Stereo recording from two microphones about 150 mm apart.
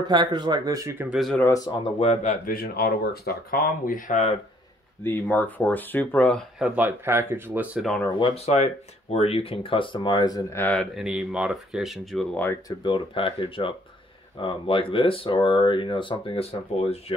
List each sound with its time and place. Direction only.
0.0 s speech: 30° right (ahead or behind)
1.1 s speech: centre (ahead or behind)
1.4 s speech: 25° left (ahead or behind)
2.0 s speech: 45° left (ahead or behind)
2.4 s speech: 80° left; by 4.4 s 50° left (ahead or behind)
5.0 s speech: 10° left (ahead or behind)
6.6 s speech: 10° right (ahead or behind)
7.8 s speech: 5° left (ahead or behind)
8.2 s speech: 45° left (ahead or behind); by 10.6 s 25° left (ahead or behind)
10.6 s speech: 10° left (ahead or behind)
11.0 s speech: 5° right (ahead or behind)
12.6 s speech: 30° left (ahead or behind)